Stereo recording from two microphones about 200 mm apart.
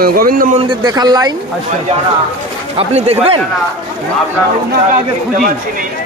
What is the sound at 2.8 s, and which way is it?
Speech, 30° right (ahead or behind).